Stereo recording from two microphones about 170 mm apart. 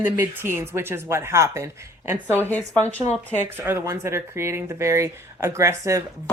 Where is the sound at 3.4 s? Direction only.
15° right (ahead or behind).